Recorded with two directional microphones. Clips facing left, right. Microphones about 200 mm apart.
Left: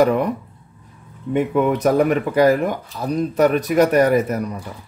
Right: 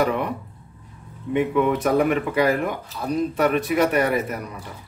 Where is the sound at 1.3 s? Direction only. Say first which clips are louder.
Left 2 dB; 45° left (ahead or behind).